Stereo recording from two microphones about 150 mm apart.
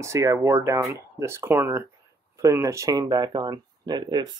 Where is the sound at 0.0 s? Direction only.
20° right (ahead or behind).